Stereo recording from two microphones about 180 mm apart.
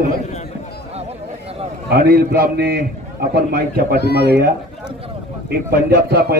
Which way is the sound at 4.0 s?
65° left (ahead or behind).